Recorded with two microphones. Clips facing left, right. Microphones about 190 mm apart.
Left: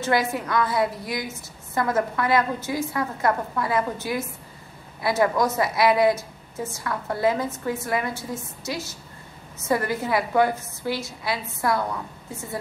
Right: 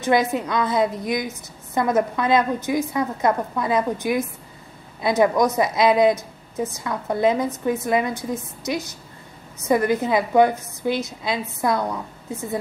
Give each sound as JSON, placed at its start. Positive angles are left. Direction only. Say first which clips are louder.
{"t": 0.0, "sound": "a woman's voice", "louder": "right 4 dB", "side_deg": -20}